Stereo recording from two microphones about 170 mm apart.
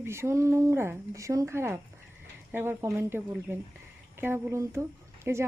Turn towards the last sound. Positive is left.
turn(degrees=-15)  # may be behind; listen again after turning